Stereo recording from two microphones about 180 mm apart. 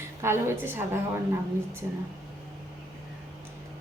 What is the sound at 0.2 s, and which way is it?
Speech, 15° right (ahead or behind).